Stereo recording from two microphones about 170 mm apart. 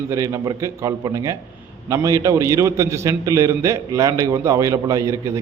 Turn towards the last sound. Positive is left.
turn(degrees=-20)  # may be behind; listen again after turning